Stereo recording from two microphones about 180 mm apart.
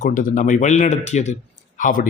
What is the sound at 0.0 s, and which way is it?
A man's voice, 45° left (ahead or behind).